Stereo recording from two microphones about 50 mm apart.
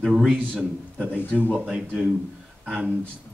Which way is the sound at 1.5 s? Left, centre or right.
Centre.